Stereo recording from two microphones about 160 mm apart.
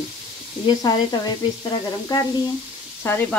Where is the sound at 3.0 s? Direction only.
15° left (ahead or behind).